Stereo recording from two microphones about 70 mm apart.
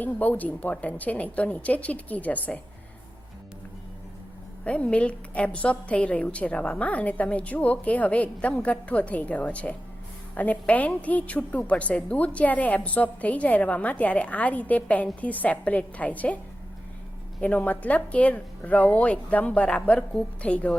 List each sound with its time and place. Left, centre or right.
0.0 s a woman's voice: left
4.6 s a woman's voice: centre
17.4 s a woman's voice: left